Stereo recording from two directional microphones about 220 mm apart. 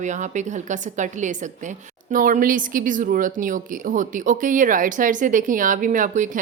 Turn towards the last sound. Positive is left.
turn(degrees=-35)  # may be behind; listen again after turning